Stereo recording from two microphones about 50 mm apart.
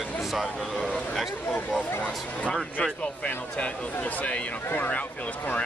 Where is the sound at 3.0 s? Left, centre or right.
Left.